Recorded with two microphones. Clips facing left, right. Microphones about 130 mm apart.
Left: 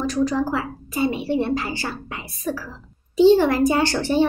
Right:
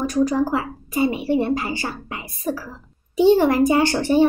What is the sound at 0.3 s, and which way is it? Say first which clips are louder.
A woman's voice: right 2 dB; 15° right (ahead or behind).